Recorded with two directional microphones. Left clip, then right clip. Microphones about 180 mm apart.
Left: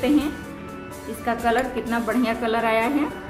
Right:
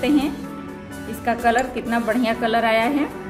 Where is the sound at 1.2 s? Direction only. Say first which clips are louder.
Right 3 dB; 30° right (ahead or behind).